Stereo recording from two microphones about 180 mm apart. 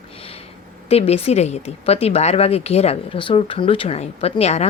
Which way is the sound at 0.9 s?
35° left (ahead or behind).